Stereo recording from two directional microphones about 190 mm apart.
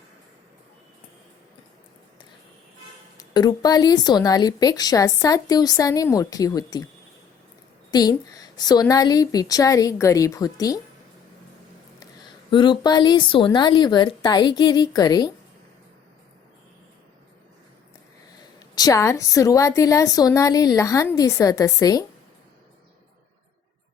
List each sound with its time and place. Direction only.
3.2 s speech: 20° left (ahead or behind)
7.9 s speech: 20° left (ahead or behind)
12.5 s speech: 25° left (ahead or behind)
18.7 s a woman's voice: 20° left (ahead or behind)